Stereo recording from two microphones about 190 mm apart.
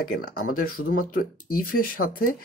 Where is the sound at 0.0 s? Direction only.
55° left (ahead or behind).